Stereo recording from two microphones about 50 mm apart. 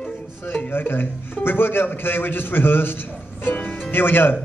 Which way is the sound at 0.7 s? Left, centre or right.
Left.